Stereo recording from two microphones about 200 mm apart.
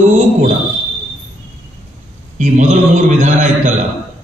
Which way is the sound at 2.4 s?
35° right (ahead or behind).